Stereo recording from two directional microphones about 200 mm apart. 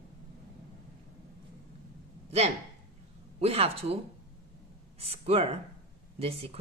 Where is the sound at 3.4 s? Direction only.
30° right (ahead or behind).